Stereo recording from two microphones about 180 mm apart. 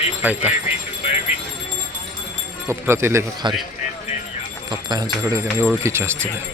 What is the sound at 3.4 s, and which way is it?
Speech, 25° right (ahead or behind).